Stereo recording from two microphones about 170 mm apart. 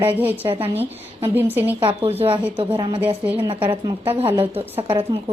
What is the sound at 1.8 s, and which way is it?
A woman's voice, 35° right (ahead or behind).